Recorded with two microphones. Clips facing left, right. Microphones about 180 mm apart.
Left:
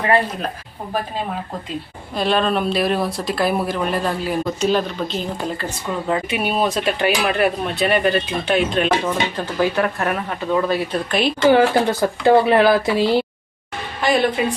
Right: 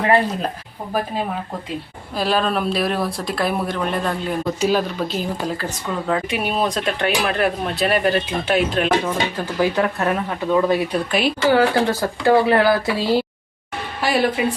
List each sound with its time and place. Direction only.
2.1 s speech: centre (ahead or behind)
4.6 s speech: 5° right (ahead or behind)
11.4 s speech: 20° left (ahead or behind)
14.0 s speech: 5° right (ahead or behind)